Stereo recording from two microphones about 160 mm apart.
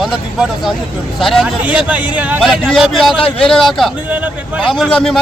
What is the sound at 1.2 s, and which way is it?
A man's voice, centre (ahead or behind).